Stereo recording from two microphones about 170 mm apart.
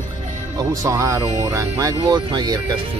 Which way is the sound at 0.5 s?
20° right (ahead or behind).